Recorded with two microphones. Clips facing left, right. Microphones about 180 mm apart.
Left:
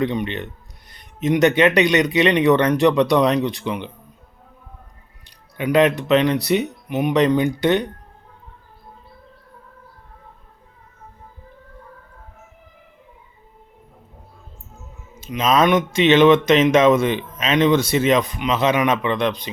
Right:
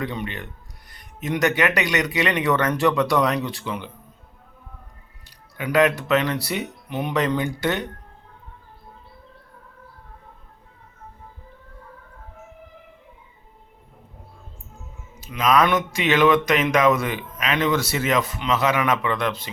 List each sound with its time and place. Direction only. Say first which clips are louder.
0.0 s speech: left 7 dB; 20° left (ahead or behind)
5.2 s speech: left 6 dB; 20° left (ahead or behind)
15.2 s speech: left 2 dB; 20° left (ahead or behind)